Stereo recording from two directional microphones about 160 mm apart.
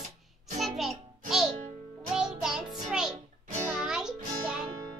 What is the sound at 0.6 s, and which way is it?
Music, centre (ahead or behind).